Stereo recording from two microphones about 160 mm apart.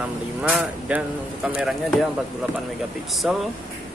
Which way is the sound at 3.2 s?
5° right (ahead or behind).